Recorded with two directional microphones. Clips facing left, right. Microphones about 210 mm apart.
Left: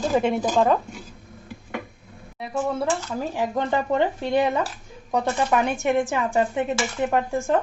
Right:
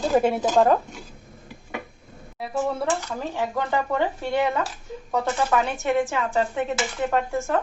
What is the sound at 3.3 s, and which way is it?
Speech, 15° left (ahead or behind).